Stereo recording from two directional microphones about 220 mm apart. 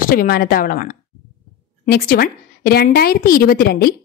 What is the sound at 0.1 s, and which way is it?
A woman's voice, 40° left (ahead or behind).